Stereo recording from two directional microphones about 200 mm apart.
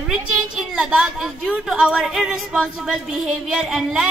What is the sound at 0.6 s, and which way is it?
A woman's voice, centre (ahead or behind).